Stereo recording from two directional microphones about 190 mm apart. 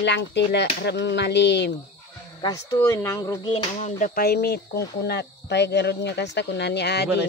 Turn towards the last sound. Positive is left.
turn(degrees=60)  # may be behind; listen again after turning